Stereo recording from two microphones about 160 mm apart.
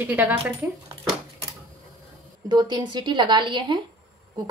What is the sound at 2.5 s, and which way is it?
A woman's voice, 25° right (ahead or behind).